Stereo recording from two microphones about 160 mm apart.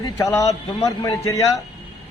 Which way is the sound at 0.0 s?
20° left (ahead or behind).